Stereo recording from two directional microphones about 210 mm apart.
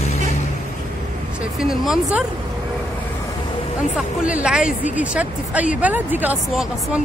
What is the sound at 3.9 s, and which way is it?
Speech, 5° right (ahead or behind).